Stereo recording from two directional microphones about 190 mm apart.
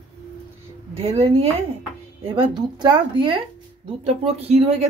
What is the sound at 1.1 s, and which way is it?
Speech, 30° right (ahead or behind).